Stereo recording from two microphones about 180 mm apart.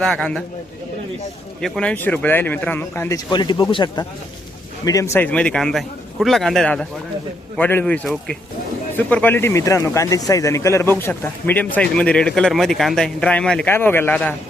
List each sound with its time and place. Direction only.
0.0 s speech: 5° left (ahead or behind)
1.6 s speech: 5° left (ahead or behind)
3.2 s speech: 25° left (ahead or behind); by 14.3 s 10° left (ahead or behind)